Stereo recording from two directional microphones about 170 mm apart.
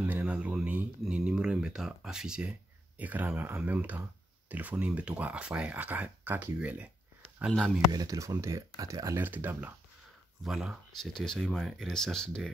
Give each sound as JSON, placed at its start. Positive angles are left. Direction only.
{"t": 0.0, "sound": "speech", "side_deg": -5}
{"t": 7.9, "sound": "speech", "side_deg": -20}